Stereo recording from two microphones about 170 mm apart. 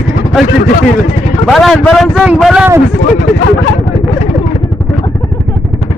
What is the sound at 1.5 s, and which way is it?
A man's voice, centre (ahead or behind).